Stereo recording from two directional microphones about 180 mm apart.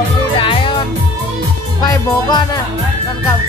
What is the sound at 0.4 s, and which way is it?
Music, 30° left (ahead or behind).